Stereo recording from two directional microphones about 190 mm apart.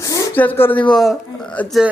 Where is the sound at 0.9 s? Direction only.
Centre (ahead or behind).